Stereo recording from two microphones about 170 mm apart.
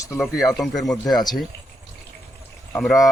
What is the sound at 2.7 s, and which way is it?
Speech, centre (ahead or behind).